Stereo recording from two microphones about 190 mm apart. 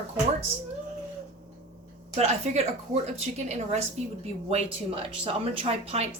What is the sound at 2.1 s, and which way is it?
A woman's voice, 35° right (ahead or behind).